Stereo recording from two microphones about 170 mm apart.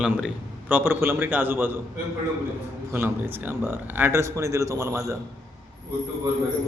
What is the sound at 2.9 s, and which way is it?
Speech, 15° right (ahead or behind).